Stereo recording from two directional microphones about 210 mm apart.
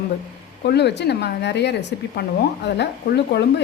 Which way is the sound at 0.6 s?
50° left (ahead or behind).